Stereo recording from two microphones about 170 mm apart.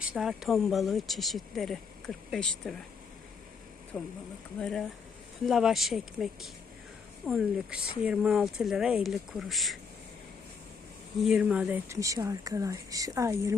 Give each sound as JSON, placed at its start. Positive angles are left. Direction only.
{"t": 0.0, "sound": "speech", "side_deg": -5}
{"t": 3.9, "sound": "speech", "side_deg": 5}
{"t": 11.2, "sound": "speech", "side_deg": -5}